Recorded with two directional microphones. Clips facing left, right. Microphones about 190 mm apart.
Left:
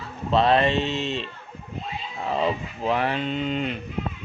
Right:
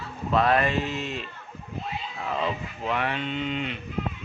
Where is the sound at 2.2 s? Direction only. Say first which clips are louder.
Left 5 dB; 35° left (ahead or behind).